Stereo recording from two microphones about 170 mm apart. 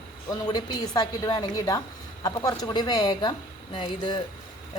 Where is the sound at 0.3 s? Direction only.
25° left (ahead or behind).